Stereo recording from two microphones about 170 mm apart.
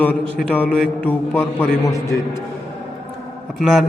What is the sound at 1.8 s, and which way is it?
Speech, 20° left (ahead or behind).